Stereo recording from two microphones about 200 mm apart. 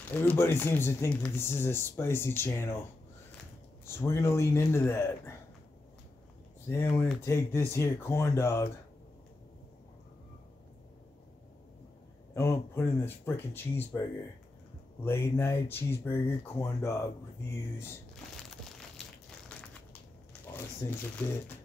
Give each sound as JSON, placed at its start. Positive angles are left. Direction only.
{"t": 0.1, "sound": "speech", "side_deg": 10}
{"t": 3.8, "sound": "speech", "side_deg": 10}
{"t": 6.7, "sound": "speech", "side_deg": 10}
{"t": 12.4, "sound": "speech", "side_deg": 10}
{"t": 15.0, "sound": "speech", "side_deg": 10}
{"t": 18.5, "sound": "a sound", "side_deg": 0}
{"t": 20.8, "sound": "speech", "side_deg": 15}